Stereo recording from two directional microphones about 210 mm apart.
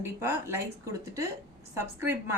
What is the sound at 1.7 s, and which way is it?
Speech, 10° right (ahead or behind).